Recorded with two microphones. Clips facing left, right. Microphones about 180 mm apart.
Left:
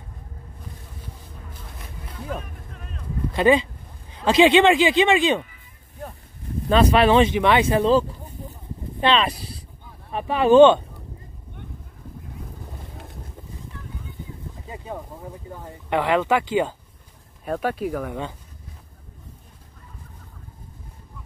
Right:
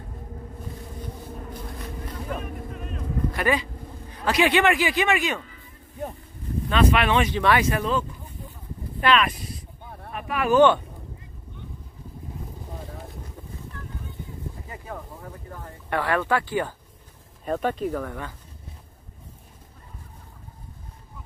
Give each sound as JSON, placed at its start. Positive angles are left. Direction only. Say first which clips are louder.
{"t": 2.0, "sound": "boat", "louder": "left 1 dB", "side_deg": 0}
{"t": 3.3, "sound": "a man's voice", "louder": "left 9 dB", "side_deg": 25}
{"t": 6.7, "sound": "a man's voice", "louder": "left 5 dB", "side_deg": 35}
{"t": 9.0, "sound": "a man's voice", "louder": "left 1 dB", "side_deg": 30}
{"t": 14.7, "sound": "a sound", "louder": "left 7 dB", "side_deg": 20}
{"t": 17.5, "sound": "speech", "louder": "even", "side_deg": 5}